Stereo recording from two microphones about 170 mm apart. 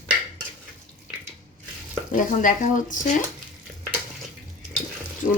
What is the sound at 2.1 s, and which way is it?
Speech, 50° left (ahead or behind).